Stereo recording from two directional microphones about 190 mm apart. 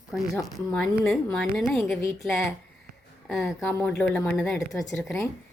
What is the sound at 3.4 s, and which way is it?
Speech, 10° left (ahead or behind).